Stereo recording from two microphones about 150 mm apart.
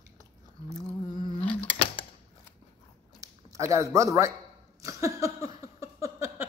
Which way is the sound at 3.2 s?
20° right (ahead or behind).